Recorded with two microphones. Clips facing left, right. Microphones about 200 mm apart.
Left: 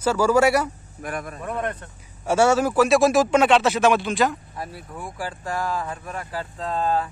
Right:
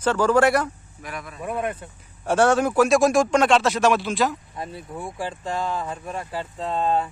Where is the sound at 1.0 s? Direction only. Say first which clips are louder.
Left 5 dB; 50° left (ahead or behind).